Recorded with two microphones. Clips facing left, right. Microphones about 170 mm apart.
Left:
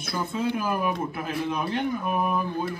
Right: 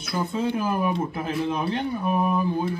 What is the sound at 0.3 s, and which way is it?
Speech, 25° right (ahead or behind).